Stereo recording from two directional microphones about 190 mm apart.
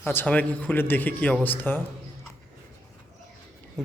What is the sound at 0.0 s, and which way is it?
Speech, 10° left (ahead or behind).